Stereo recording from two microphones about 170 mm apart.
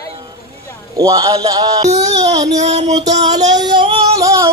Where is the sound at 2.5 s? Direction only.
40° right (ahead or behind).